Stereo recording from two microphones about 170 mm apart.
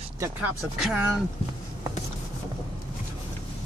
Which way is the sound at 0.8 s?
10° right (ahead or behind).